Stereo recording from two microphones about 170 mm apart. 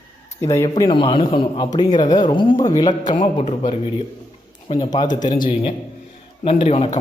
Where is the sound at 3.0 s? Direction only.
45° left (ahead or behind).